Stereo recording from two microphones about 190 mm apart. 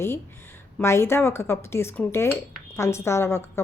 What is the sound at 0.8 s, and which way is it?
Speech, 15° left (ahead or behind).